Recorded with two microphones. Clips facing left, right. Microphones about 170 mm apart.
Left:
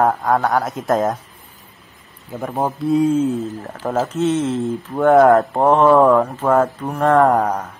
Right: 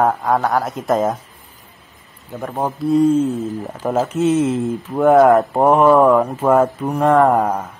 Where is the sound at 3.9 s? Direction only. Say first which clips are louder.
Right 2 dB; 10° right (ahead or behind).